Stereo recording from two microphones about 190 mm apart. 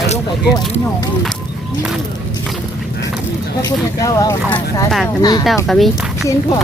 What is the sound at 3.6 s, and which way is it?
Speech, 15° left (ahead or behind).